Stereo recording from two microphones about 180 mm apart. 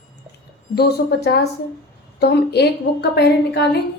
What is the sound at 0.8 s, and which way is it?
A woman's voice, 65° left (ahead or behind).